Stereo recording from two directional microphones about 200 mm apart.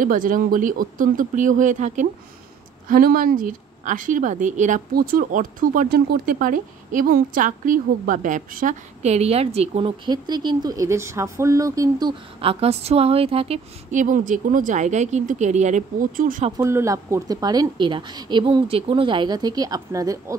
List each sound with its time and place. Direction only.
0.0 s a woman's voice: 40° right (ahead or behind)
16.5 s a woman's voice: 15° right (ahead or behind)